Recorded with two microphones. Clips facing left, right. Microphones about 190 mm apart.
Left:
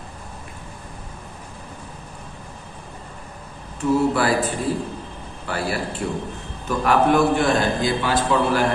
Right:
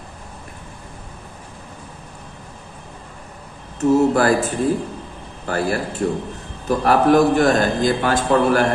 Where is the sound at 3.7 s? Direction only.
45° right (ahead or behind).